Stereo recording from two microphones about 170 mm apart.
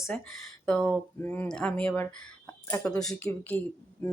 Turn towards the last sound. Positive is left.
turn(degrees=10)  # may be behind; listen again after turning